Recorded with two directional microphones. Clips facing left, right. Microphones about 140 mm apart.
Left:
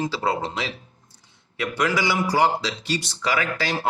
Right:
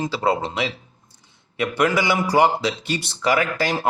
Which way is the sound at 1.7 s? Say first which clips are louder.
Right 3 dB; 55° right (ahead or behind).